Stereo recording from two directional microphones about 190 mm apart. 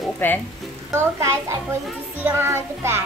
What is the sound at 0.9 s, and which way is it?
Music, 15° right (ahead or behind).